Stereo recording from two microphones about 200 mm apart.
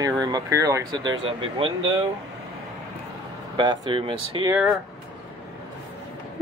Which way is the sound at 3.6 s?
25° right (ahead or behind).